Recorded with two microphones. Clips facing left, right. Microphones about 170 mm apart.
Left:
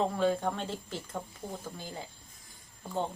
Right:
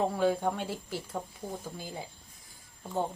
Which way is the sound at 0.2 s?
10° right (ahead or behind).